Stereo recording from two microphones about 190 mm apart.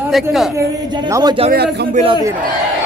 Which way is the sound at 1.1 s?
20° right (ahead or behind).